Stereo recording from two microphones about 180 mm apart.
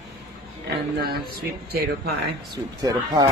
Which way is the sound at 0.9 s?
60° right (ahead or behind).